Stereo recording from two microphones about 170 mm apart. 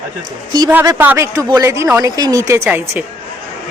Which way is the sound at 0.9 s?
15° right (ahead or behind).